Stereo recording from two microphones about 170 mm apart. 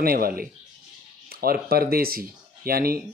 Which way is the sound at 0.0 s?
60° right (ahead or behind).